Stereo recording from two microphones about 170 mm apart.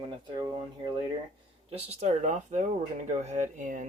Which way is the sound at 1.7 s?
35° right (ahead or behind).